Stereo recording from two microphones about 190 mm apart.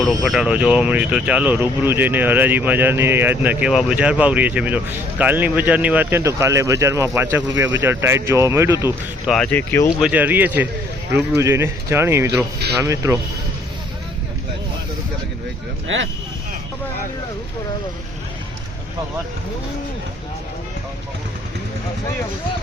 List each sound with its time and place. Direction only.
0.0 s speech: centre (ahead or behind)
9.2 s speech: centre (ahead or behind)
10.0 s speech: 10° right (ahead or behind)
15.9 s speech: 85° right